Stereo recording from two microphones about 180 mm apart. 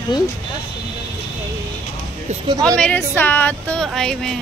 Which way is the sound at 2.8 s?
10° left (ahead or behind).